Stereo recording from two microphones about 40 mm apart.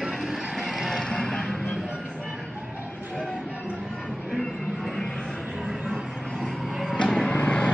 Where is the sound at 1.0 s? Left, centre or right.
Centre.